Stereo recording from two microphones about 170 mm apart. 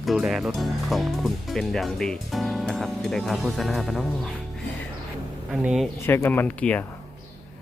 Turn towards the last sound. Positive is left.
turn(degrees=10)  # may be behind; listen again after turning